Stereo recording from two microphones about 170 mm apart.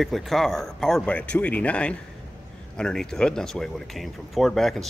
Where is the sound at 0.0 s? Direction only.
Centre (ahead or behind).